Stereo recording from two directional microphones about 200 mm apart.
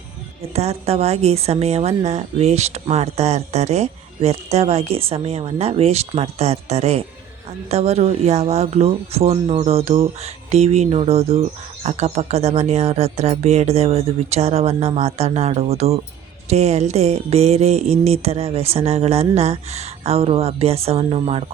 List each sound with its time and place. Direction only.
0.5 s a woman's voice: 30° right (ahead or behind)